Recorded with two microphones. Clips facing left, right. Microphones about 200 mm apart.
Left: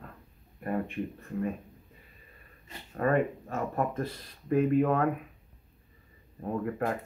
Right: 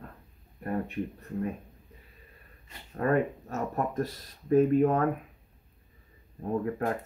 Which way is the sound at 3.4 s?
40° right (ahead or behind).